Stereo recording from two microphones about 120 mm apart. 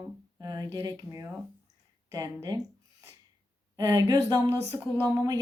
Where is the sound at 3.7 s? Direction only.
30° right (ahead or behind).